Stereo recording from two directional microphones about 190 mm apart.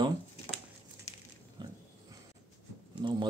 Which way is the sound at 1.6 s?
25° right (ahead or behind).